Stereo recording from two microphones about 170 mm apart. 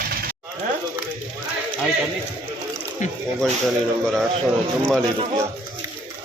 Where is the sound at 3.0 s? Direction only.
45° left (ahead or behind).